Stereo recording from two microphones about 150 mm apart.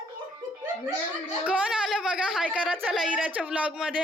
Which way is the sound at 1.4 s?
5° right (ahead or behind).